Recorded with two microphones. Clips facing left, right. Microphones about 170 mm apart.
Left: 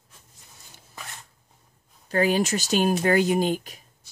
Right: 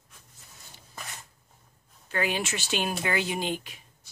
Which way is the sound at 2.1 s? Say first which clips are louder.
Left 8 dB; 40° left (ahead or behind).